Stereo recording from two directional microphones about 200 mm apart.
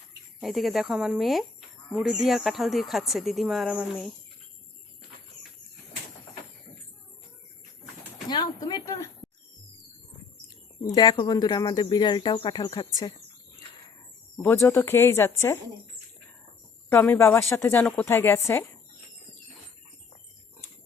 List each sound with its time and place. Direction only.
0.3 s speech: centre (ahead or behind)
8.3 s a sound: 20° left (ahead or behind)
10.9 s speech: 20° left (ahead or behind)
14.5 s speech: 15° left (ahead or behind)
16.9 s speech: 10° left (ahead or behind)